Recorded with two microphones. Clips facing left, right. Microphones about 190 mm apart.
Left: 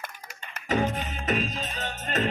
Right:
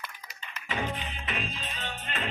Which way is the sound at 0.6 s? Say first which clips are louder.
Left 7 dB; 45° left (ahead or behind).